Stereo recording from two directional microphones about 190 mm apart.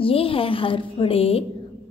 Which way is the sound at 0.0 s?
30° left (ahead or behind).